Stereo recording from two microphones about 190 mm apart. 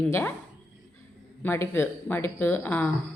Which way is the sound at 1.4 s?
15° left (ahead or behind).